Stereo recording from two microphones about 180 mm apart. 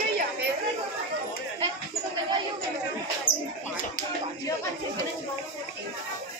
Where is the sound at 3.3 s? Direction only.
50° left (ahead or behind).